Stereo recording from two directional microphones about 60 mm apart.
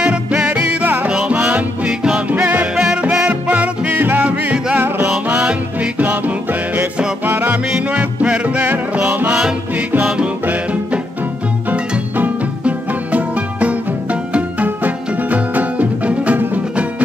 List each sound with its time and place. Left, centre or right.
0.0 s music: centre
0.8 s music: right
1.1 s music: centre
2.7 s music: centre
7.2 s music: right
7.9 s music: right
12.2 s music: right